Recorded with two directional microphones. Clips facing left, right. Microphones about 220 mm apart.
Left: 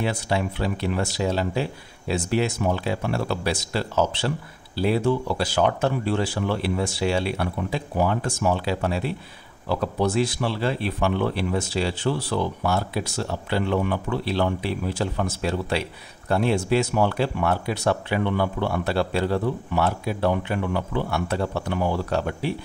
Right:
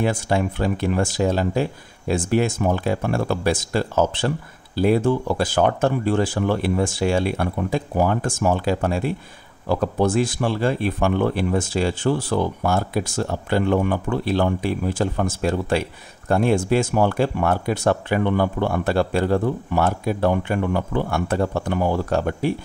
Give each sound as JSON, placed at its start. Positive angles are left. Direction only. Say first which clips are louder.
{"t": 0.0, "sound": "speech", "louder": "right 4 dB", "side_deg": -50}